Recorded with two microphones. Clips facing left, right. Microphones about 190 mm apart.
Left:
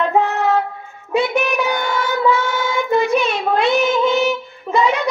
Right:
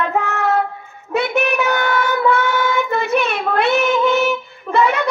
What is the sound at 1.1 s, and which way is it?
Child singing, 60° right (ahead or behind).